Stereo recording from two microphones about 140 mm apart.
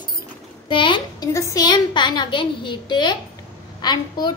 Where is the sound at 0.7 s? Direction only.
35° left (ahead or behind).